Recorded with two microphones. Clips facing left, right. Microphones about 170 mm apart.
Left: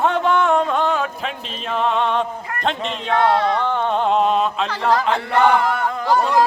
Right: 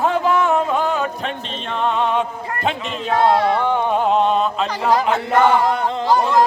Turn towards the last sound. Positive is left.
turn(degrees=-20)  # may be behind; listen again after turning